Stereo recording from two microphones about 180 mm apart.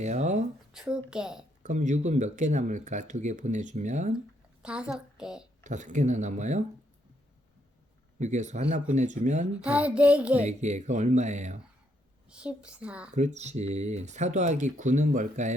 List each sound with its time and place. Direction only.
0.0 s speech: 40° right (ahead or behind)
0.7 s a woman's voice: 5° right (ahead or behind)
1.6 s speech: 45° right (ahead or behind)
4.6 s a woman's voice: 5° right (ahead or behind)
5.6 s speech: 45° right (ahead or behind)
8.2 s speech: 40° right (ahead or behind)
9.6 s a sound: 5° right (ahead or behind)
10.4 s speech: 40° right (ahead or behind)
12.3 s a sound: 5° right (ahead or behind)
13.1 s speech: 40° right (ahead or behind)